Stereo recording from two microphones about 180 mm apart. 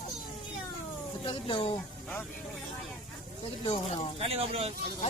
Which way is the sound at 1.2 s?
30° left (ahead or behind).